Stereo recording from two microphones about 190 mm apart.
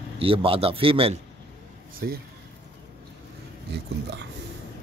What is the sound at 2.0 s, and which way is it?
Speech, 50° right (ahead or behind).